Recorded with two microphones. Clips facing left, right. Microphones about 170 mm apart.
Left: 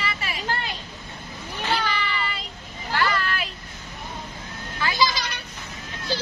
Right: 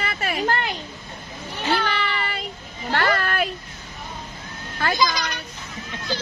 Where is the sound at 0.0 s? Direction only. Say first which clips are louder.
Right 6 dB; 50° right (ahead or behind).